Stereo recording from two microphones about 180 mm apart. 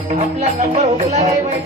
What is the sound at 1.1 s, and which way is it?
Music, 40° right (ahead or behind).